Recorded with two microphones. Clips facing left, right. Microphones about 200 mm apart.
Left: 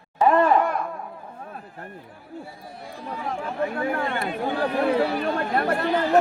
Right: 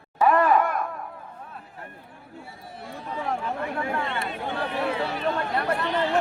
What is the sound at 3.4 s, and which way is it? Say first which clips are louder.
Speech: left 3 dB; 45° left (ahead or behind).